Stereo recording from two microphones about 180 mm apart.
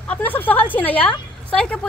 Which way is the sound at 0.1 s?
10° left (ahead or behind).